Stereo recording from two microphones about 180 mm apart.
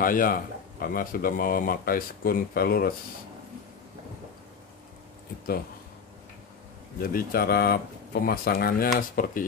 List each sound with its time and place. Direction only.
0.0 s speech: 50° left (ahead or behind)
7.0 s speech: 55° left (ahead or behind)